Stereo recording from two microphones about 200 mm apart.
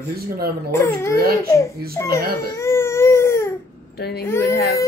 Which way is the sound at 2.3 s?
15° left (ahead or behind).